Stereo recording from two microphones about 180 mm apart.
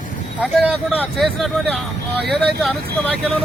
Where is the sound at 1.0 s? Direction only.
Centre (ahead or behind).